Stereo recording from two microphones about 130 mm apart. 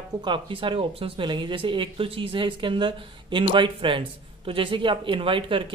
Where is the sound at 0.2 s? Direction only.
40° right (ahead or behind).